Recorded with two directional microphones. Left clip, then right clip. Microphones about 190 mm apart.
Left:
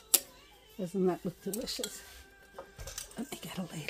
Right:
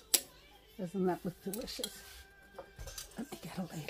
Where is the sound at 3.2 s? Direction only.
15° left (ahead or behind).